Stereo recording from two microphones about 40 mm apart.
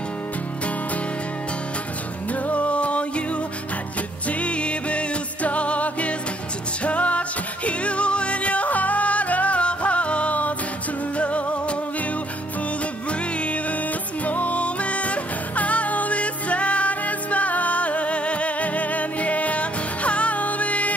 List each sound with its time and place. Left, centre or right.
2.4 s music: left
4.3 s music: left
13.4 s music: left